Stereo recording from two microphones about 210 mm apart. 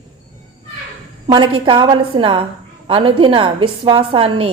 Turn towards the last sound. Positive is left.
turn(degrees=-25)  # may be behind; listen again after turning